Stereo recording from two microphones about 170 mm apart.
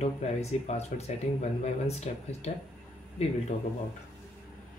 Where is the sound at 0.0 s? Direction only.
40° left (ahead or behind).